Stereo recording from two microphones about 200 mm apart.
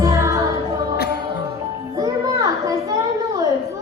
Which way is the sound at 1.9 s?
20° right (ahead or behind).